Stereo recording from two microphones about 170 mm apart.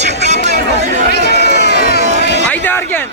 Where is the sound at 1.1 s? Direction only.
75° left (ahead or behind).